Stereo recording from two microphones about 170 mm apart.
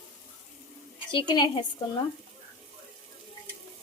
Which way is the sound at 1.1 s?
25° left (ahead or behind).